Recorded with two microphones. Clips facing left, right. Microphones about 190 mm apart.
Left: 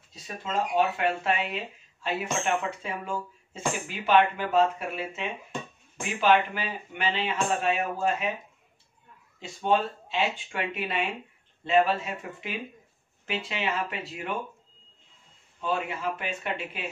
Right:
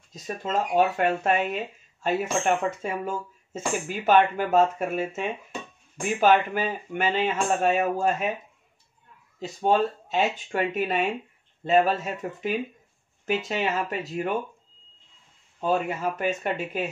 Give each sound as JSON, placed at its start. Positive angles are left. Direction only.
{"t": 0.1, "sound": "speech", "side_deg": -45}
{"t": 9.4, "sound": "speech", "side_deg": -40}
{"t": 15.6, "sound": "speech", "side_deg": -45}